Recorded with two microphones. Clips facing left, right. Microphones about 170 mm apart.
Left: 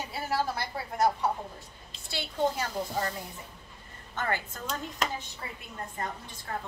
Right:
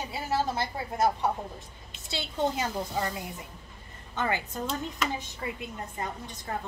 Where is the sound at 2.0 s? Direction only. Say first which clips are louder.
Even; 20° right (ahead or behind).